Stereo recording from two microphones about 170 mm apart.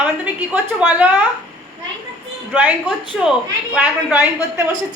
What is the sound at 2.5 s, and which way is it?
Speech, 5° right (ahead or behind).